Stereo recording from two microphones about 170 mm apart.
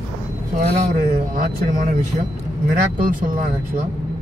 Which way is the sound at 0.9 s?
55° right (ahead or behind).